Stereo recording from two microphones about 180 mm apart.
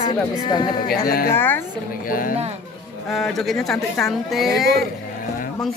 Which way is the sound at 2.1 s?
50° left (ahead or behind).